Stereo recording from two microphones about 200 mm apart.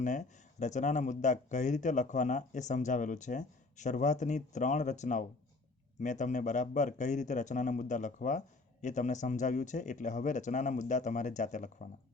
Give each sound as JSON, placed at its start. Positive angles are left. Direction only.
{"t": 0.0, "sound": "a man's voice", "side_deg": 35}